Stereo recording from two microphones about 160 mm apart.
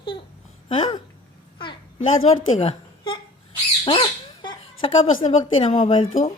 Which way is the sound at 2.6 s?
35° left (ahead or behind).